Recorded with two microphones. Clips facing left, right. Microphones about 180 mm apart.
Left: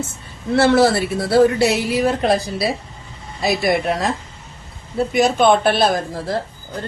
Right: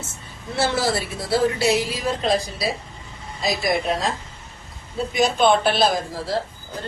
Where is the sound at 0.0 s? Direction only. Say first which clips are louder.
Left 9 dB; 65° left (ahead or behind).